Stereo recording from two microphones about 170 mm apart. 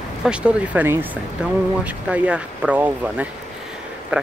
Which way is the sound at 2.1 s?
10° right (ahead or behind).